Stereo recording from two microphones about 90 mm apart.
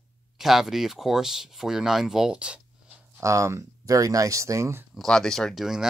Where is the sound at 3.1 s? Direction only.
35° right (ahead or behind).